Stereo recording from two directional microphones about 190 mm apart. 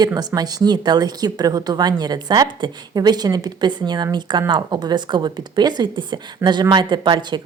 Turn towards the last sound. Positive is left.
turn(degrees=-25)  # may be behind; listen again after turning